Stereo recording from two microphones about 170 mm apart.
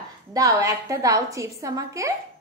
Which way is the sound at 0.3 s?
20° right (ahead or behind).